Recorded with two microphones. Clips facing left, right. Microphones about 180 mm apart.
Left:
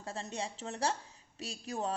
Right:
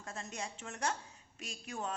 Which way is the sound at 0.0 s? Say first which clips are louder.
Left 4 dB; 30° left (ahead or behind).